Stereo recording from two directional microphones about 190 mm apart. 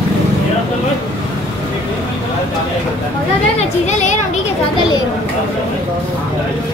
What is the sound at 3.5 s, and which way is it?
Speech, 40° left (ahead or behind).